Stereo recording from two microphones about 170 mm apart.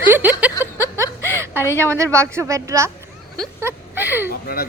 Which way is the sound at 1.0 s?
15° left (ahead or behind).